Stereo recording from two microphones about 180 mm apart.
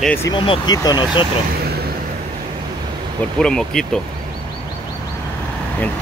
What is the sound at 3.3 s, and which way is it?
Speech, 5° left (ahead or behind).